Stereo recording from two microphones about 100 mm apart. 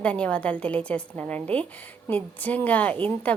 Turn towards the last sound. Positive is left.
turn(degrees=15)  # may be behind; listen again after turning